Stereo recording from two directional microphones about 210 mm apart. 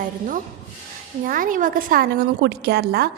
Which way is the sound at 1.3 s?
40° right (ahead or behind).